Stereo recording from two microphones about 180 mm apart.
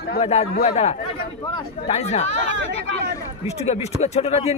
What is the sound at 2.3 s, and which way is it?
Speech, 90° right.